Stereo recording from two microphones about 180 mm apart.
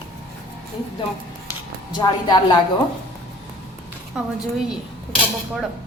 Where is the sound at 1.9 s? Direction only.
25° left (ahead or behind).